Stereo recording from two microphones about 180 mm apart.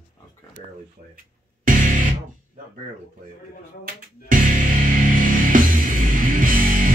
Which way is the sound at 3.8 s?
50° right (ahead or behind).